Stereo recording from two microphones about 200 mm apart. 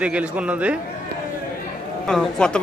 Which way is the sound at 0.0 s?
5° right (ahead or behind).